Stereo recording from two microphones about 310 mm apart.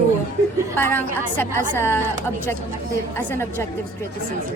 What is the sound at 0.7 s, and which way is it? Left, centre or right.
A woman's voice, centre.